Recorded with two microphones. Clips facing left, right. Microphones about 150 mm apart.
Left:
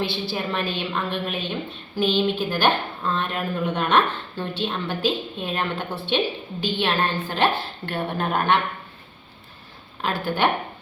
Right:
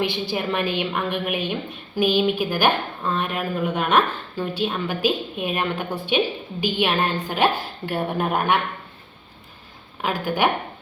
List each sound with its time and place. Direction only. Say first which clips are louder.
0.0 s a woman's voice: right 2 dB; 15° right (ahead or behind)
10.0 s a woman's voice: right 1 dB; 15° right (ahead or behind)